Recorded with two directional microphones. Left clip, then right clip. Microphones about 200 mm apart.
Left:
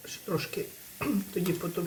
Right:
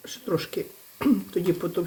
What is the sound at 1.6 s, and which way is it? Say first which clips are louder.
Speech: right 6 dB; 40° right (ahead or behind).